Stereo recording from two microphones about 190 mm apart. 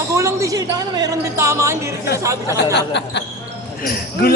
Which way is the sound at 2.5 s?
65° left (ahead or behind).